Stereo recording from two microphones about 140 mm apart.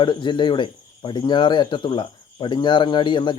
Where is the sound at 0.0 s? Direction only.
35° left (ahead or behind).